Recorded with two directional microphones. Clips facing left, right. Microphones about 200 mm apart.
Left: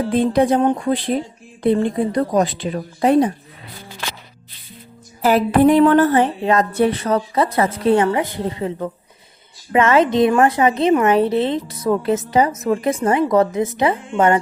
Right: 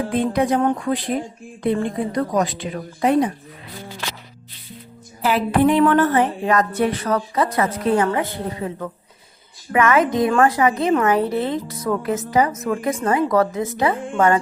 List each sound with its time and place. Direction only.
0.1 s a woman's voice: 30° left (ahead or behind)
5.2 s a woman's voice: 40° left (ahead or behind); by 13.9 s 20° left (ahead or behind)